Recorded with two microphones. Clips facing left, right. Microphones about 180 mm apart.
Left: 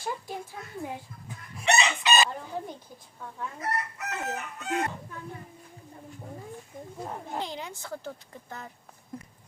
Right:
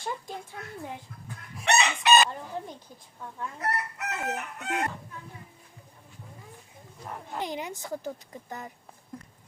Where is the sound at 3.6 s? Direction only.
65° right (ahead or behind).